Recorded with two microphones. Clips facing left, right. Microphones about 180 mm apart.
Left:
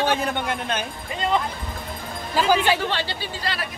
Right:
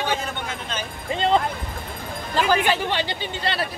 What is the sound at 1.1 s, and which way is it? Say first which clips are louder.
Speech: right 3 dB; 25° right (ahead or behind).